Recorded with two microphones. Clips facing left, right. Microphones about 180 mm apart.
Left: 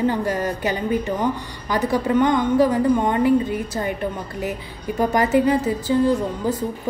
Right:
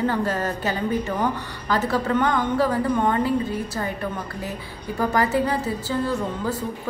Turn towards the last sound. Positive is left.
turn(degrees=15)  # may be behind; listen again after turning